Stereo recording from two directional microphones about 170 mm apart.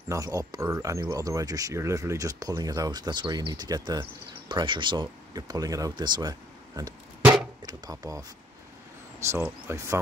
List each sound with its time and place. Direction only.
0.1 s speech: 20° right (ahead or behind)
7.6 s speech: 20° right (ahead or behind)
9.3 s speech: 15° right (ahead or behind)